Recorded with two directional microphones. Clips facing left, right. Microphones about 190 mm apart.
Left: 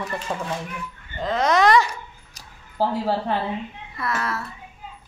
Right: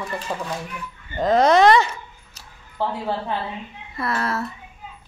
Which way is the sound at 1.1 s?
40° right (ahead or behind).